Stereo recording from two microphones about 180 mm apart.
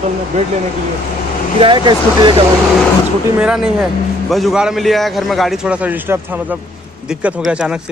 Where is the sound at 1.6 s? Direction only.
25° right (ahead or behind).